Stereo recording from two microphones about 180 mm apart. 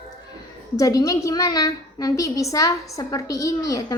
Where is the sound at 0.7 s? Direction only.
20° left (ahead or behind).